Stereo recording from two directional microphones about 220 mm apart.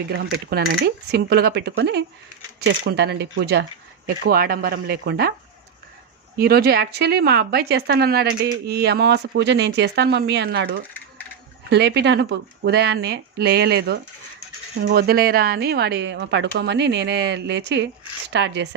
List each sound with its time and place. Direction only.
0.7 s a woman's voice: 50° right (ahead or behind)
6.3 s a woman's voice: 45° right (ahead or behind)